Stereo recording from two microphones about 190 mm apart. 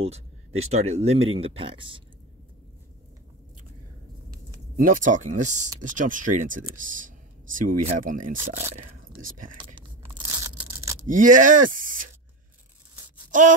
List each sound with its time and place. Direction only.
0.0 s a sound: 35° right (ahead or behind)
0.7 s speech: 35° right (ahead or behind)
4.7 s speech: 45° right (ahead or behind)
9.8 s tearing: 15° right (ahead or behind)
11.1 s speech: 45° right (ahead or behind)
13.3 s wail: 45° right (ahead or behind)